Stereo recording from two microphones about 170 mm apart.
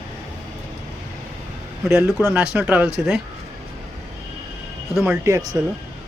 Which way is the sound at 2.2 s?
5° right (ahead or behind).